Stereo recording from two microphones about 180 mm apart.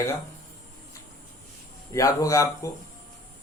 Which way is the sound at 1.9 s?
20° left (ahead or behind).